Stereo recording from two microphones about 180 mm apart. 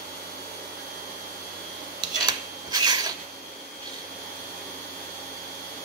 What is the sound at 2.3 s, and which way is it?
Rub, 25° right (ahead or behind).